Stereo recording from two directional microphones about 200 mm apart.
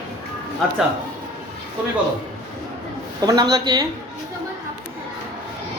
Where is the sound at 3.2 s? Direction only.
20° right (ahead or behind).